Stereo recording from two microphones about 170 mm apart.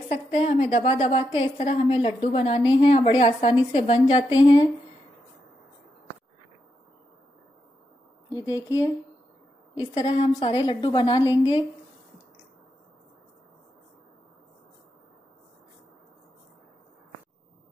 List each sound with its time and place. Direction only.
0.1 s a woman's voice: 40° left (ahead or behind)
8.3 s a woman's voice: 20° left (ahead or behind)
10.0 s a woman's voice: 35° left (ahead or behind)